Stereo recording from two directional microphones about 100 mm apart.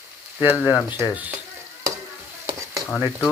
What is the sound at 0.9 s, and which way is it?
Speech, 15° right (ahead or behind).